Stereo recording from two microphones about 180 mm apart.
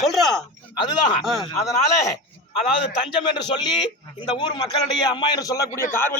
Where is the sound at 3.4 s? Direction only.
25° left (ahead or behind).